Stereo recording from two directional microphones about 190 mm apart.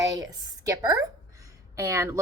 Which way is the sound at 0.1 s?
20° right (ahead or behind).